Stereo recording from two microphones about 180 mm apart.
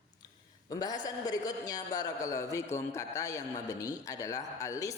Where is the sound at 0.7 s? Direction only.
20° left (ahead or behind).